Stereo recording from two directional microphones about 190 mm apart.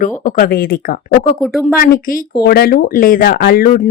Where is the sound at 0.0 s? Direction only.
45° left (ahead or behind).